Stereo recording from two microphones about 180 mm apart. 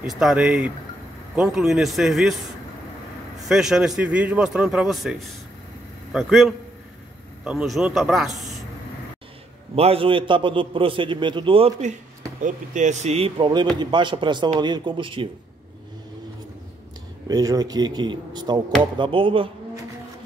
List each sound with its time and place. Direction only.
0.0 s a man's voice: centre (ahead or behind)
3.4 s a man's voice: 5° right (ahead or behind)
9.8 s a man's voice: 30° right (ahead or behind)
12.4 s a man's voice: 45° right (ahead or behind)
17.3 s a man's voice: 20° right (ahead or behind)